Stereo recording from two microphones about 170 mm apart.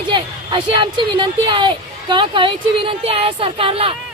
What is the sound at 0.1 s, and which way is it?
Speech, 30° right (ahead or behind).